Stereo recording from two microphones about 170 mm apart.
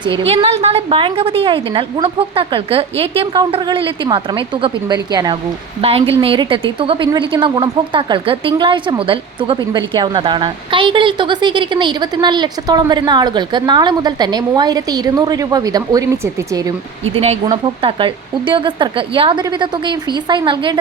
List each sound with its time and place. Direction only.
0.3 s a woman's voice: 35° right (ahead or behind)
5.8 s a woman's voice: 35° right (ahead or behind)
17.2 s speech: 35° right (ahead or behind)